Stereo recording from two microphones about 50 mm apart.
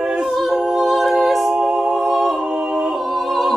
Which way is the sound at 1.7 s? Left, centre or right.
Centre.